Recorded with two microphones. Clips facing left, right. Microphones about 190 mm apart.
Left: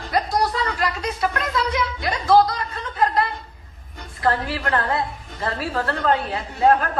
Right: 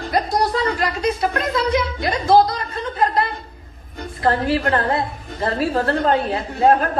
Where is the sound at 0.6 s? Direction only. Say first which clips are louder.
Right 5 dB; 25° right (ahead or behind).